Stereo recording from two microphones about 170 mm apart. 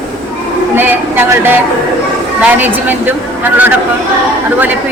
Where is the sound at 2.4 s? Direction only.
10° right (ahead or behind).